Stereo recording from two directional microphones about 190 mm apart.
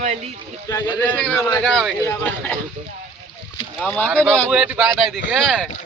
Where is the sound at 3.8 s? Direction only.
10° left (ahead or behind).